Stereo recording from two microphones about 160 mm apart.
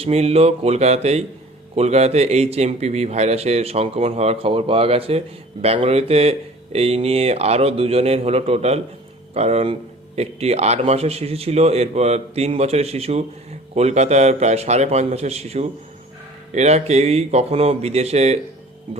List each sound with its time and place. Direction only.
0.0 s speech: 40° right (ahead or behind)